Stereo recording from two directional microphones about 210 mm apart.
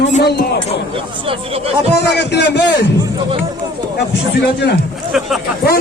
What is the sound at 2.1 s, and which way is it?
Speech, 55° left (ahead or behind).